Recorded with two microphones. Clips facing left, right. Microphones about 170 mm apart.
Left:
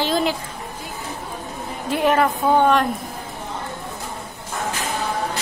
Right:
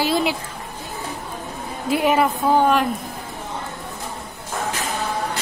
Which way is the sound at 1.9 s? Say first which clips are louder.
Even; 5° right (ahead or behind).